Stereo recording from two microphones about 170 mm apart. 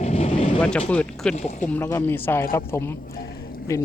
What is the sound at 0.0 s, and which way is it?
Vehicle, 40° left (ahead or behind).